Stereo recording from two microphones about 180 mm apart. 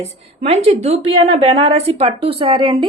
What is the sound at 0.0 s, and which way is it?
A woman's voice, 35° right (ahead or behind).